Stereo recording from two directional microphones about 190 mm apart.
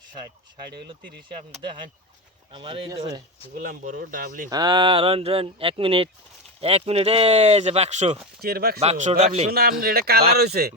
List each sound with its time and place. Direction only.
1.6 s speech: 25° right (ahead or behind)
3.6 s speech: 50° right (ahead or behind)
4.4 s speech: 20° right (ahead or behind)
8.4 s speech: 55° right (ahead or behind)
8.8 s speech: 35° right (ahead or behind)
9.5 s a man's voice: 55° right (ahead or behind)